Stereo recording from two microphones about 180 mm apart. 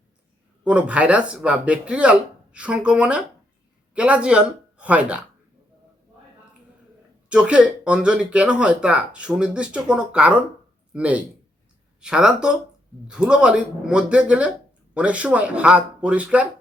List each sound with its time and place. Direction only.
0.6 s a woman's voice: 5° right (ahead or behind)
7.3 s speech: 5° right (ahead or behind)